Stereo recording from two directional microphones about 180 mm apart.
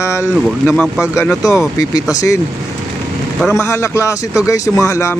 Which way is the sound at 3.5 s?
15° left (ahead or behind).